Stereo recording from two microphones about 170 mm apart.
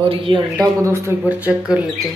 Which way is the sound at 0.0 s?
30° right (ahead or behind).